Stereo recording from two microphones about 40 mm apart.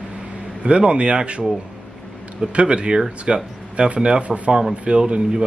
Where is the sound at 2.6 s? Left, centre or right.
Right.